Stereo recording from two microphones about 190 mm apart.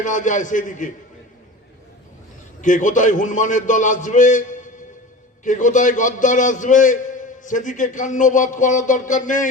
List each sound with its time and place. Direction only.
0.0 s a man's voice: 40° left (ahead or behind)
2.6 s a man's voice: 40° left (ahead or behind)